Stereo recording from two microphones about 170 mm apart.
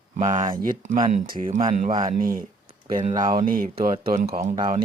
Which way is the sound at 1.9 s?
30° right (ahead or behind).